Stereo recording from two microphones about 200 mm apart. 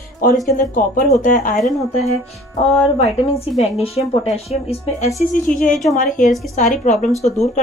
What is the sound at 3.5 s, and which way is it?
Speech, 30° left (ahead or behind).